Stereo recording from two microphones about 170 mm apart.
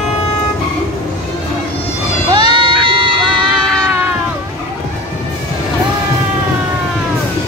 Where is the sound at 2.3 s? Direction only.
25° right (ahead or behind).